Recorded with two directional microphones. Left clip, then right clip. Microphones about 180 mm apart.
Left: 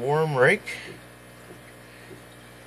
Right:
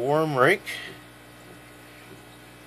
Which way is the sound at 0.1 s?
25° right (ahead or behind).